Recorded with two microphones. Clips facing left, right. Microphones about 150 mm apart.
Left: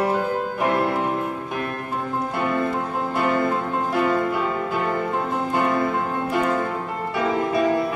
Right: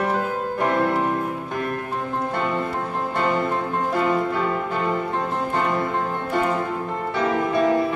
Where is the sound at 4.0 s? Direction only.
5° left (ahead or behind).